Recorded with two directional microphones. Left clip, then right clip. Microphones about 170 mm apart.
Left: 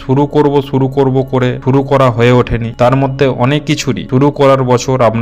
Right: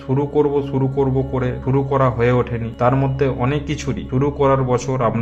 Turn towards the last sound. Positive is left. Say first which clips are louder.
# left 9 dB
turn(degrees=30)  # may be behind; listen again after turning